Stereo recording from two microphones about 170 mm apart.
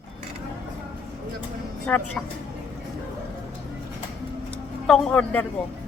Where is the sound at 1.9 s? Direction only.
5° left (ahead or behind).